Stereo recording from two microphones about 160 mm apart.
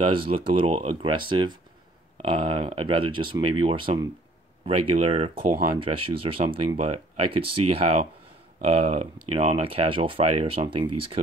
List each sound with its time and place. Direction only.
0.0 s speech: 35° right (ahead or behind)